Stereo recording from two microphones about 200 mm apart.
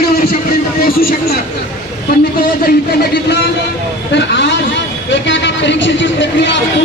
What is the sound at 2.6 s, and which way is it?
A woman's voice, 50° left (ahead or behind).